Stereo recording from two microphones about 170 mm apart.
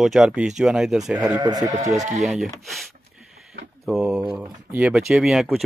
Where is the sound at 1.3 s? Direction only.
20° right (ahead or behind).